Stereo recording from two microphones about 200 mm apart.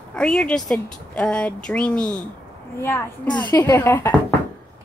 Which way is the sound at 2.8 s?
15° left (ahead or behind).